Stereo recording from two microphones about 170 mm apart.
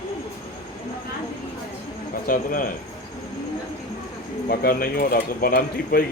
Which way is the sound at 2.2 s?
55° left (ahead or behind).